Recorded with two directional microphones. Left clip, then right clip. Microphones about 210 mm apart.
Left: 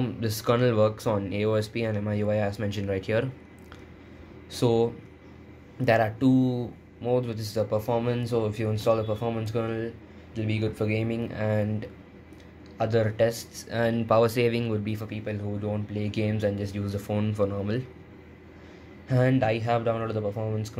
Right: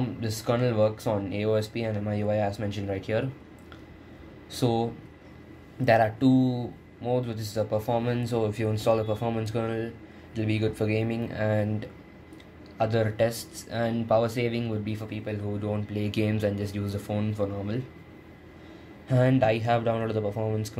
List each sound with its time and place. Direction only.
0.0 s speech: 20° left (ahead or behind)
4.5 s speech: 15° left (ahead or behind)
5.9 s speech: 10° left (ahead or behind)
15.6 s speech: centre (ahead or behind); by 17.7 s 20° left (ahead or behind)
19.0 s speech: 5° left (ahead or behind)